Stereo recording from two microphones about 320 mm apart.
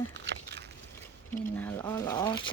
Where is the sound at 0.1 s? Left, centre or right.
Right.